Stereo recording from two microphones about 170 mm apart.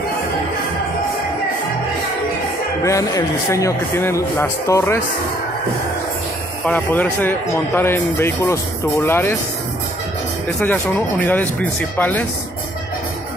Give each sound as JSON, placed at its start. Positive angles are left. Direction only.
{"t": 2.8, "sound": "a man's voice", "side_deg": 20}
{"t": 6.6, "sound": "a man's voice", "side_deg": 10}
{"t": 10.6, "sound": "a man's voice", "side_deg": 10}